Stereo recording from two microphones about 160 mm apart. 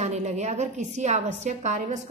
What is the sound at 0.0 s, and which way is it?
A woman's voice, 45° right (ahead or behind).